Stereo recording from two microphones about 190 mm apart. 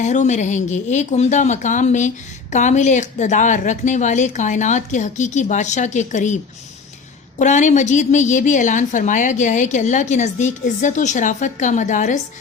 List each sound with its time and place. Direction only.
0.0 s speech: 40° left (ahead or behind)